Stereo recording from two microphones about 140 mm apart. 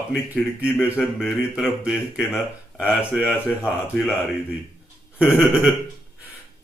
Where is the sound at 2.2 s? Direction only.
15° left (ahead or behind).